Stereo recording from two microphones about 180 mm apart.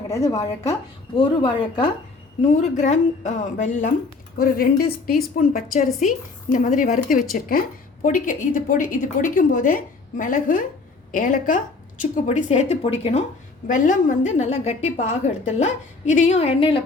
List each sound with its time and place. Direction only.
0.1 s a woman's voice: 15° left (ahead or behind)
2.5 s a woman's voice: 40° left (ahead or behind)
4.4 s a woman's voice: 55° left (ahead or behind); by 13.2 s 35° left (ahead or behind)
13.7 s a woman's voice: 45° left (ahead or behind); by 16.8 s 30° left (ahead or behind)